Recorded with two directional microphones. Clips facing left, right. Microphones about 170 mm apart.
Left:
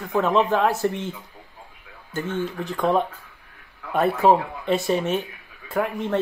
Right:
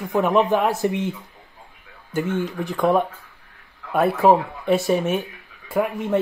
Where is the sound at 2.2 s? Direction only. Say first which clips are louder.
Right 3 dB; 15° right (ahead or behind).